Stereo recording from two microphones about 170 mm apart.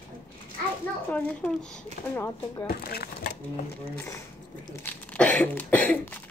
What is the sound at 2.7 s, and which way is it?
Speech, 65° left (ahead or behind).